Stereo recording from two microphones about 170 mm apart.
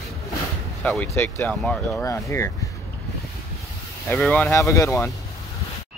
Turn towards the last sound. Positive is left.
turn(degrees=15)  # may be behind; listen again after turning